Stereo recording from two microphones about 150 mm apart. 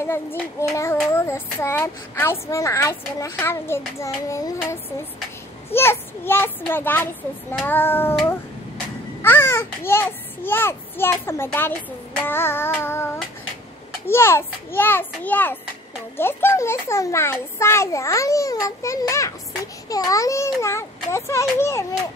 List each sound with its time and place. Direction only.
0.0 s a child's voice: 15° left (ahead or behind)
9.2 s a child's voice: 15° left (ahead or behind)